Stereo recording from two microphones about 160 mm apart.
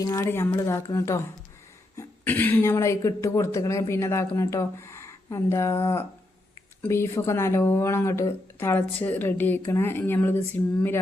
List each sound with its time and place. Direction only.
0.0 s speech: 20° left (ahead or behind)